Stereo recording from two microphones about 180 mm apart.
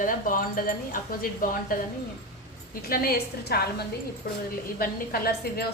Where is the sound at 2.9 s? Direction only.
55° left (ahead or behind).